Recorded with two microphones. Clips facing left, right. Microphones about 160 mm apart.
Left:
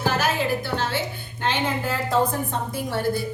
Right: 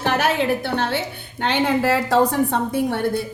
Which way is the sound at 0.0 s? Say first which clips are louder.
Right 3 dB; 65° right (ahead or behind).